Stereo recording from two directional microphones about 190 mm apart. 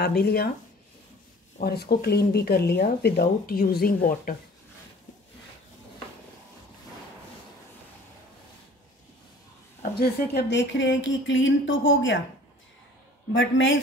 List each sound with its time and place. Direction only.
0.0 s speech: 55° left (ahead or behind)
1.6 s speech: 55° left (ahead or behind)
9.9 s speech: 65° left (ahead or behind); by 12.2 s 85° left
13.3 s a man's voice: 85° left